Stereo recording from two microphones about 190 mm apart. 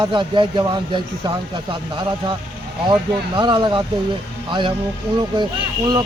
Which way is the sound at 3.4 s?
25° right (ahead or behind).